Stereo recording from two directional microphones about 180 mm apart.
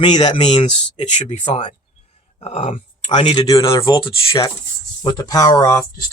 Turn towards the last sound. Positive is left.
turn(degrees=20)  # may be behind; listen again after turning